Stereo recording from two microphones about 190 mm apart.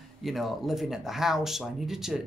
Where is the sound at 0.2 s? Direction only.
Centre (ahead or behind).